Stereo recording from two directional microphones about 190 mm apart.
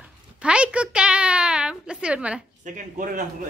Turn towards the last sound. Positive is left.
turn(degrees=-45)  # may be behind; listen again after turning